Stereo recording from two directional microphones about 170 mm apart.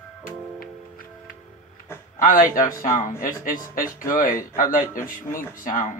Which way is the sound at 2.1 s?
55° left (ahead or behind).